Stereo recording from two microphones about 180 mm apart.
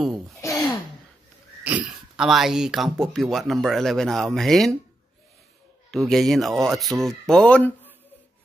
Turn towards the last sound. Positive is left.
turn(degrees=10)  # may be behind; listen again after turning